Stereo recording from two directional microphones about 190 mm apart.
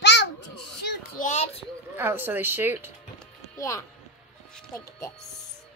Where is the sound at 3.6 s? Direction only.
15° left (ahead or behind).